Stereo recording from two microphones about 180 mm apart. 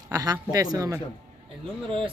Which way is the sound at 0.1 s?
20° right (ahead or behind).